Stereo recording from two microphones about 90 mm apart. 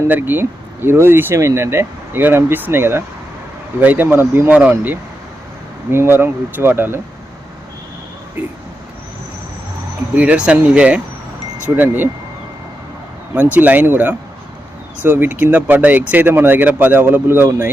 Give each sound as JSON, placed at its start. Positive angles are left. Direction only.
{"t": 0.1, "sound": "speech", "side_deg": -20}
{"t": 10.2, "sound": "speech", "side_deg": -15}
{"t": 13.3, "sound": "speech", "side_deg": -20}